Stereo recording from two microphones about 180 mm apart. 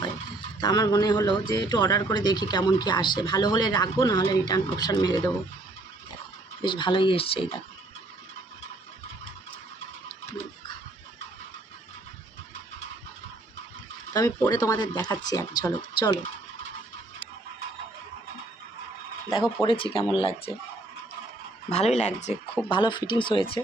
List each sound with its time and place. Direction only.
0.6 s a man's voice: 20° left (ahead or behind)
6.6 s a man's voice: 25° left (ahead or behind)
14.1 s a man's voice: 20° left (ahead or behind)
19.6 s a man's voice: 30° left (ahead or behind)
21.7 s speech: 35° left (ahead or behind)
22.7 s a man's voice: 25° left (ahead or behind)